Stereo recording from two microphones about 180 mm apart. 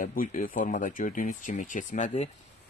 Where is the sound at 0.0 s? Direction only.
50° left (ahead or behind).